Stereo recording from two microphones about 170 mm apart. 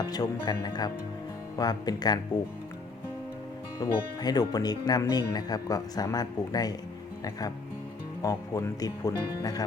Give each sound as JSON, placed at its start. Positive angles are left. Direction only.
{"t": 0.0, "sound": "speech", "side_deg": 25}
{"t": 3.8, "sound": "speech", "side_deg": 25}